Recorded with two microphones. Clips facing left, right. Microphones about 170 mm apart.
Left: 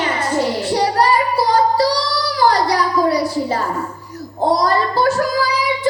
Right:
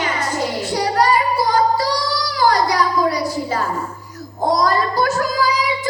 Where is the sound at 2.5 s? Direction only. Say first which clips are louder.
Left 1 dB; 30° left (ahead or behind).